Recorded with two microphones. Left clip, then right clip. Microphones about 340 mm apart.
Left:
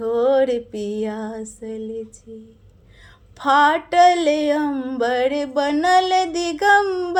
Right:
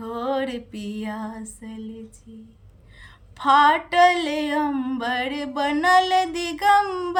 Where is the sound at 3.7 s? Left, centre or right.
Centre.